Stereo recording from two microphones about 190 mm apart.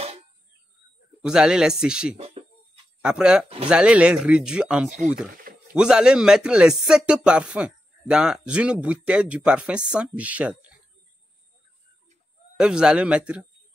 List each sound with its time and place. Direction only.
1.2 s speech: 5° right (ahead or behind)
2.1 s a sound: 30° right (ahead or behind)
3.0 s speech: 5° right (ahead or behind)
12.5 s speech: 5° right (ahead or behind)